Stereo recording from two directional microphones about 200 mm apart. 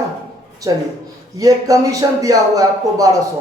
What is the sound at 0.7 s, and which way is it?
Speech, 20° right (ahead or behind).